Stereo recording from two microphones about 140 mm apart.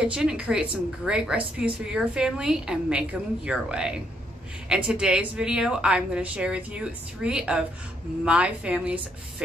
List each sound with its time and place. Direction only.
0.0 s a woman's voice: 5° right (ahead or behind)